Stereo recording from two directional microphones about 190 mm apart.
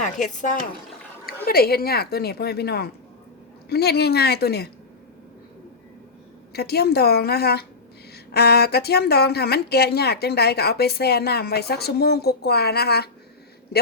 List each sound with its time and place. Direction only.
0.0 s speech: 40° left (ahead or behind)
1.5 s speech: 55° left (ahead or behind)
6.5 s speech: 55° left (ahead or behind)